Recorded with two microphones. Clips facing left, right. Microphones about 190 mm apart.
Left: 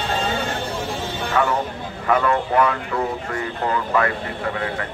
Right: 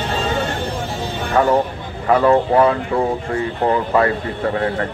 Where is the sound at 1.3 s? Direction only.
35° right (ahead or behind).